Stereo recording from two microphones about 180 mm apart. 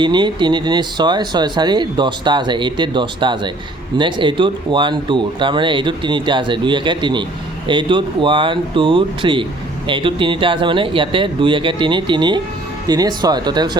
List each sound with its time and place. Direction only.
0.0 s speech: 25° right (ahead or behind)